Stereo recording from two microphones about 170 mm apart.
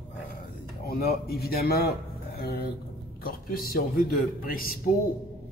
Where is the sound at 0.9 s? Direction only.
65° left (ahead or behind).